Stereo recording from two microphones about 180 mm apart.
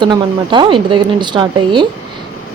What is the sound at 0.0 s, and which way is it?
A woman's voice, 25° right (ahead or behind).